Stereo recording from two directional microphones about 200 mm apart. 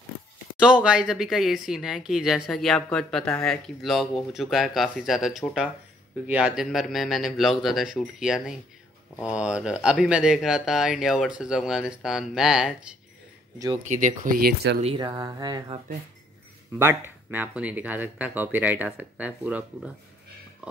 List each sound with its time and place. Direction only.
0.6 s speech: 5° right (ahead or behind)
13.8 s speech: 40° right (ahead or behind)
15.0 s speech: 20° right (ahead or behind)